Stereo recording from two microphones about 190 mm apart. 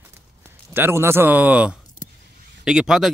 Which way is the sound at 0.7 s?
10° right (ahead or behind).